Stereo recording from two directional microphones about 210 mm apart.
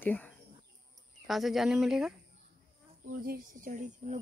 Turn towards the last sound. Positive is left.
turn(degrees=-35)  # may be behind; listen again after turning